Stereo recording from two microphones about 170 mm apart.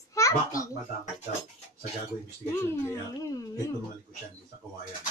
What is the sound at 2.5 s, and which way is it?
Speech, 15° left (ahead or behind).